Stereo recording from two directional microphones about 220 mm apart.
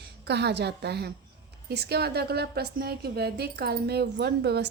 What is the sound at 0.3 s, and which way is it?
A woman's voice, 50° right (ahead or behind).